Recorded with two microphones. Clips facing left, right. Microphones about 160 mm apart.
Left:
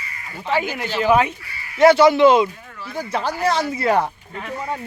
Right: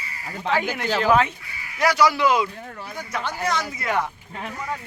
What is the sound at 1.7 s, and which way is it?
A man's voice, 25° left (ahead or behind).